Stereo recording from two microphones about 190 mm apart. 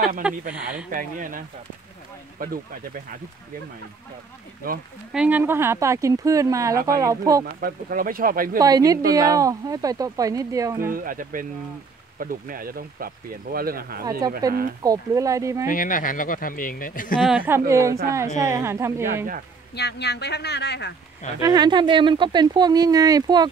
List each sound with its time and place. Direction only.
0.2 s speech: 5° right (ahead or behind)
0.8 s speech: 45° right (ahead or behind)
4.6 s speech: 50° right (ahead or behind)
5.1 s speech: 5° right (ahead or behind)
7.6 s speech: 50° right (ahead or behind)
8.5 s speech: 20° right (ahead or behind)
10.9 s speech: 45° right (ahead or behind)
14.4 s speech: 20° right (ahead or behind)
15.7 s speech: 45° left (ahead or behind)
17.2 s speech: 5° right (ahead or behind)
19.7 s speech: 60° left (ahead or behind)
21.4 s speech: 20° right (ahead or behind)